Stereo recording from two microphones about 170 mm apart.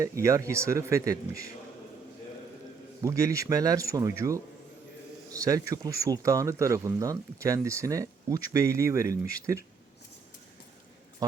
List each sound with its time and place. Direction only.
0.0 s speech: 15° right (ahead or behind)
3.0 s speech: 20° right (ahead or behind)
11.2 s speech: 20° right (ahead or behind)